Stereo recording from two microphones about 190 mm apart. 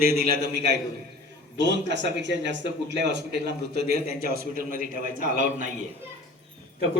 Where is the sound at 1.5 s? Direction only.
70° right (ahead or behind); by 5.3 s 45° right (ahead or behind).